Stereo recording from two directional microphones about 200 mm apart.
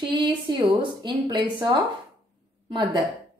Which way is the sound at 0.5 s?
25° right (ahead or behind).